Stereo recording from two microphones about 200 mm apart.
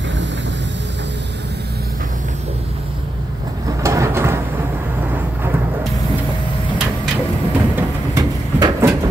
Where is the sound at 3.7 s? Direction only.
15° right (ahead or behind).